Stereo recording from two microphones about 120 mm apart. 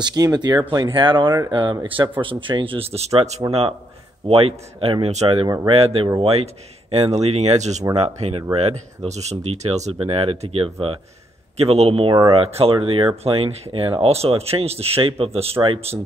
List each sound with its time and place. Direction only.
0.0 s speech: 30° right (ahead or behind); by 3.4 s 65° right (ahead or behind)
4.3 s speech: 50° right (ahead or behind); by 7.8 s 70° right (ahead or behind)
7.9 s speech: 60° right (ahead or behind)
8.5 s speech: 65° right (ahead or behind); by 11.0 s 50° right (ahead or behind)
11.5 s speech: 60° right (ahead or behind)